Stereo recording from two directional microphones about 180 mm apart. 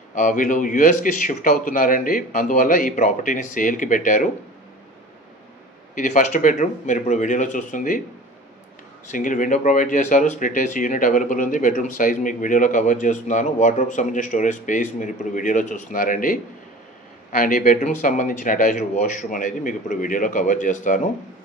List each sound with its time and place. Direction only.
0.1 s speech: 45° left (ahead or behind)
5.9 s speech: 45° left (ahead or behind)
9.1 s speech: 45° left (ahead or behind)